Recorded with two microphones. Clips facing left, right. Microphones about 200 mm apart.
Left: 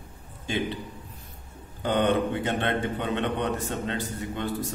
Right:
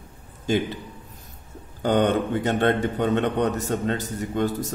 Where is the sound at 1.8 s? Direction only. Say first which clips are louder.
Right 3 dB; 45° right (ahead or behind).